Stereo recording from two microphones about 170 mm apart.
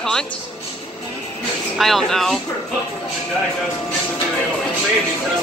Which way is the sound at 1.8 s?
Centre (ahead or behind).